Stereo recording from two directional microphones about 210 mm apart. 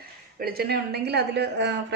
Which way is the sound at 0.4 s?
45° right (ahead or behind).